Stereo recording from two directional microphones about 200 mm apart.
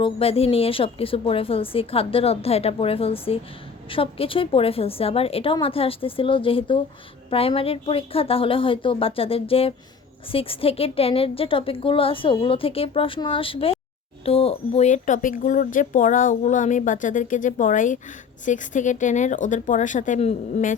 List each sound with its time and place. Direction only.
0.0 s a woman's voice: 30° left (ahead or behind)